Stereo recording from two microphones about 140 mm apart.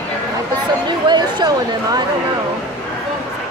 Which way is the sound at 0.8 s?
30° right (ahead or behind).